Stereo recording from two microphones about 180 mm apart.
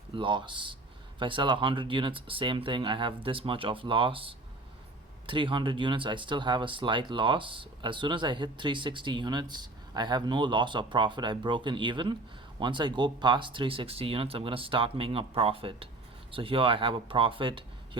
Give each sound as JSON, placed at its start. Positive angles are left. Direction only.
{"t": 0.1, "sound": "speech", "side_deg": -25}